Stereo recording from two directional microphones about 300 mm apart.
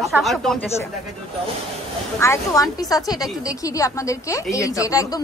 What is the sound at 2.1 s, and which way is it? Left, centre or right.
A woman's voice, centre.